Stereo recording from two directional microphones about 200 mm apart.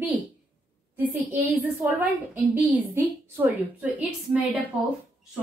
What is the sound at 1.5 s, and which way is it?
A woman's voice, 10° right (ahead or behind).